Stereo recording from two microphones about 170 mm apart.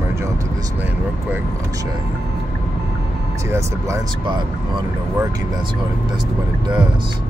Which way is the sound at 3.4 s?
20° right (ahead or behind).